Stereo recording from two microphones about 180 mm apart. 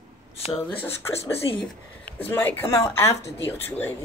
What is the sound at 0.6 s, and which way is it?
Speech, 10° left (ahead or behind).